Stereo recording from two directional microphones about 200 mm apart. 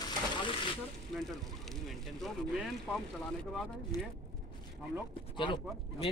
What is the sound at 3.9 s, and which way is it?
Speech, 20° left (ahead or behind).